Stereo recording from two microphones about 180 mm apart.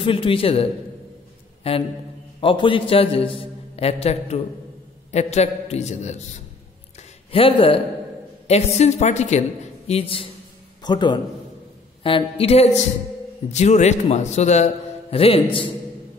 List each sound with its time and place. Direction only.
0.0 s a man's voice: 30° left (ahead or behind)
7.2 s a man's voice: 30° left (ahead or behind)